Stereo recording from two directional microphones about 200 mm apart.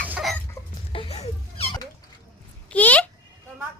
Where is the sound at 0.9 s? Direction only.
30° left (ahead or behind).